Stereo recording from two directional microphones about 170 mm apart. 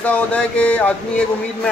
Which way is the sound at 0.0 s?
5° left (ahead or behind).